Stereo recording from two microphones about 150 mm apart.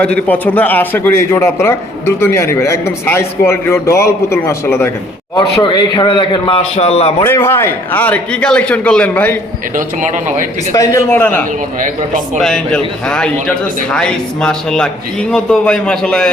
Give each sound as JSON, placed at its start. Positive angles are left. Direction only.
{"t": 0.0, "sound": "a man's voice", "side_deg": 10}
{"t": 5.4, "sound": "a man's voice", "side_deg": 30}
{"t": 6.6, "sound": "a man's voice", "side_deg": 45}
{"t": 7.3, "sound": "a man's voice", "side_deg": 15}
{"t": 9.7, "sound": "speech", "side_deg": -55}
{"t": 10.8, "sound": "a man's voice", "side_deg": 15}